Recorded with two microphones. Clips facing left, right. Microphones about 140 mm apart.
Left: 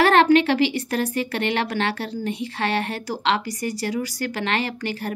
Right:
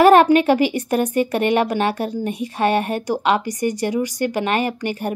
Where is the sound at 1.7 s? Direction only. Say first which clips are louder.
Right 5 dB; 15° right (ahead or behind).